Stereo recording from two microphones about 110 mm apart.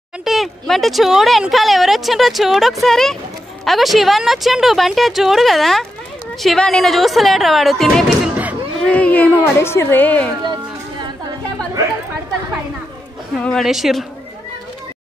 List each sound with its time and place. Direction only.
0.2 s speech: centre (ahead or behind); by 10.3 s 15° left (ahead or behind)
10.4 s a sound: 40° right (ahead or behind)
13.4 s speech: 5° left (ahead or behind)